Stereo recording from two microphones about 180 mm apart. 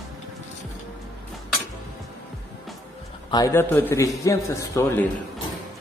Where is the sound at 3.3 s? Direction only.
15° left (ahead or behind).